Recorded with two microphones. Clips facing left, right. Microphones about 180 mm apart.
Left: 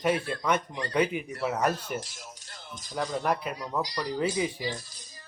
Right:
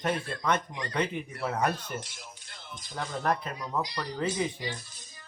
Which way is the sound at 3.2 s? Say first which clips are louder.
Right 2 dB; 5° left (ahead or behind).